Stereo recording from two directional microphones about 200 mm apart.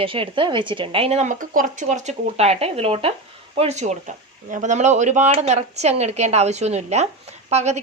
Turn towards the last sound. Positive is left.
turn(degrees=-35)  # may be behind; listen again after turning